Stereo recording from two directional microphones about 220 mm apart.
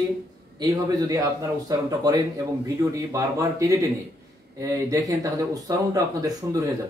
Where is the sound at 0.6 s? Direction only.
15° right (ahead or behind).